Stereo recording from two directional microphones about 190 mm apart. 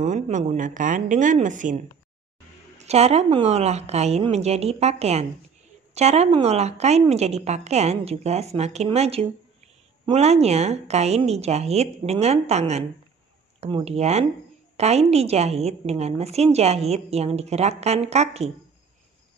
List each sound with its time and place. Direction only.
0.0 s a woman's voice: 40° right (ahead or behind)
2.8 s a woman's voice: 35° right (ahead or behind)